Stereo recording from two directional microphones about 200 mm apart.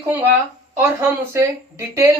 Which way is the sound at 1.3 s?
15° right (ahead or behind).